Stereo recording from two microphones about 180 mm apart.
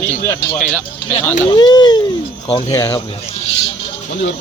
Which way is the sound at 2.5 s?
35° left (ahead or behind).